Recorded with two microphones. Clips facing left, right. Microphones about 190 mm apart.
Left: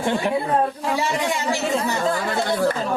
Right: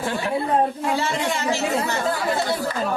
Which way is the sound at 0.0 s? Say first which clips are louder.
Left 2 dB; 20° left (ahead or behind).